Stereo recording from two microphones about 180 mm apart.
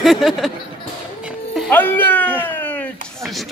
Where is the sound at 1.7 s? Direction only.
10° left (ahead or behind).